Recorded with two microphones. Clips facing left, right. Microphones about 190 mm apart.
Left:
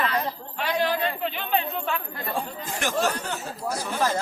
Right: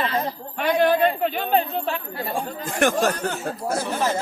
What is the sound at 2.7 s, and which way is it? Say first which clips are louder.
Speech: right 6 dB; 55° right (ahead or behind).